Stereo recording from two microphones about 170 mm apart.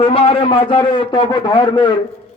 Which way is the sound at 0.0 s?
35° left (ahead or behind).